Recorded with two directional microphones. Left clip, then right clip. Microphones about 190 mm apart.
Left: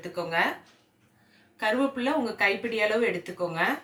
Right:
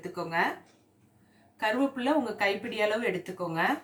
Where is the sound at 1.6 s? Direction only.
25° left (ahead or behind).